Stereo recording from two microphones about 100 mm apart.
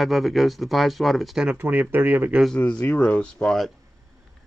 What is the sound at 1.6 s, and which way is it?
Speech, 20° right (ahead or behind).